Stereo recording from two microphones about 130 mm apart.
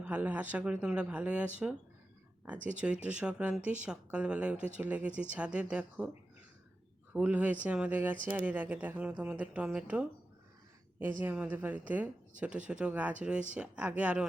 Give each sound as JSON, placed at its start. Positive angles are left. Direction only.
{"t": 0.0, "sound": "speech", "side_deg": -10}
{"t": 2.6, "sound": "speech", "side_deg": -75}
{"t": 2.8, "sound": "speech", "side_deg": -10}
{"t": 4.5, "sound": "speech", "side_deg": -70}
{"t": 4.8, "sound": "speech", "side_deg": -10}
{"t": 7.1, "sound": "speech", "side_deg": -10}
{"t": 11.2, "sound": "speech", "side_deg": -15}